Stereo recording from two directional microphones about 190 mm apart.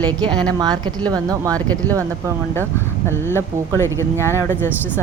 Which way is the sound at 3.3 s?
15° left (ahead or behind).